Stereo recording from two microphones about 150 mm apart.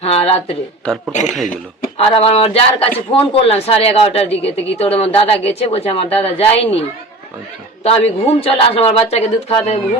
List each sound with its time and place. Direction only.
0.0 s a sound: 40° left (ahead or behind)
1.1 s speech: 50° left (ahead or behind)
2.0 s a man's voice: 40° left (ahead or behind)
7.9 s a man's voice: 40° left (ahead or behind)